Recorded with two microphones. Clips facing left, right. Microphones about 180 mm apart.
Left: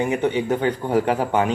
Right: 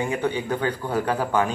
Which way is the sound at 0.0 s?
20° left (ahead or behind).